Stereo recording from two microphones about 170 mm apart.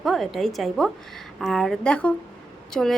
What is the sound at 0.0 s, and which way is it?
A woman's voice, centre (ahead or behind).